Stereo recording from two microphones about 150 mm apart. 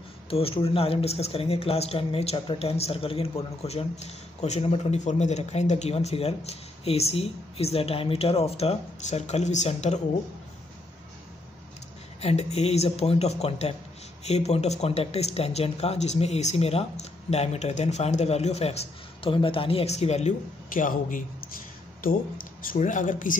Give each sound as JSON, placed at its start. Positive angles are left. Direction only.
{"t": 0.3, "sound": "speech", "side_deg": 40}
{"t": 12.2, "sound": "speech", "side_deg": 45}
{"t": 22.7, "sound": "speech", "side_deg": 60}